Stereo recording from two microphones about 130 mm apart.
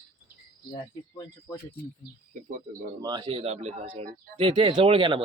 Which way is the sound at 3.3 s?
55° right (ahead or behind).